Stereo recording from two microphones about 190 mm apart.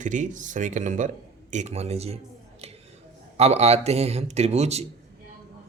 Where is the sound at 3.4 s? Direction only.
35° right (ahead or behind).